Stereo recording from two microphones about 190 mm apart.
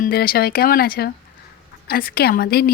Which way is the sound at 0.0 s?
50° left (ahead or behind).